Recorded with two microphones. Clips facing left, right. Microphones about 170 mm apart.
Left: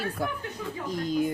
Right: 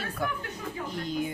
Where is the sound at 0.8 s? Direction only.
40° left (ahead or behind).